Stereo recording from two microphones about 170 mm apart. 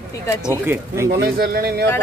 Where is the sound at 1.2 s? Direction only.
60° right (ahead or behind).